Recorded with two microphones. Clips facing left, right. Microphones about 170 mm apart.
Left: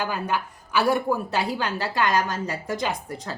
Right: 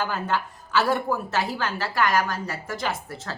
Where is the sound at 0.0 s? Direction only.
15° left (ahead or behind).